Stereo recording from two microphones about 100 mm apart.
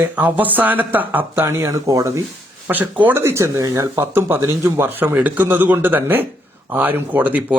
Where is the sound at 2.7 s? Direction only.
15° right (ahead or behind).